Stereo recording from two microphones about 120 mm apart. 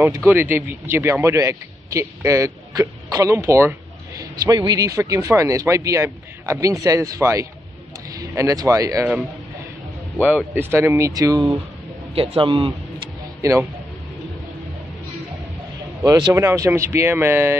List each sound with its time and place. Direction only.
0.1 s speech: 20° right (ahead or behind)
4.2 s speech: 35° right (ahead or behind)
10.2 s speech: 15° right (ahead or behind)
12.2 s a man's voice: 50° right (ahead or behind)
13.4 s speech: 25° right (ahead or behind)
16.1 s speech: 30° right (ahead or behind)